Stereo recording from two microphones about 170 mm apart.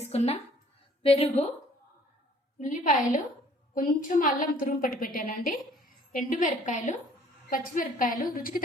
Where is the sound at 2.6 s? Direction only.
50° left (ahead or behind).